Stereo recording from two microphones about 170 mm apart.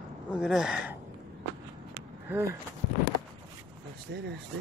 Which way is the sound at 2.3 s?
15° right (ahead or behind).